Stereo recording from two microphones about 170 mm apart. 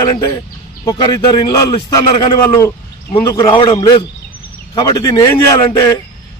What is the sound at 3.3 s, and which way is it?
A man's voice, 25° left (ahead or behind).